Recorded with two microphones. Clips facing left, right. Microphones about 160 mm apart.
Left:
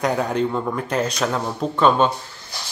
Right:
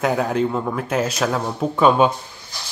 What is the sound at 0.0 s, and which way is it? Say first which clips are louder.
A man's voice: right 1 dB; 5° right (ahead or behind).